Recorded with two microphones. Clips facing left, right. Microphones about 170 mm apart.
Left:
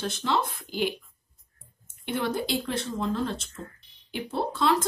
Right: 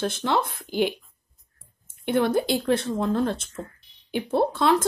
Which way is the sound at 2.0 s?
55° right (ahead or behind).